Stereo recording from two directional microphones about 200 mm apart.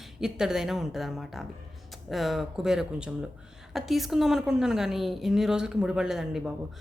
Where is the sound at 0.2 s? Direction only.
Centre (ahead or behind).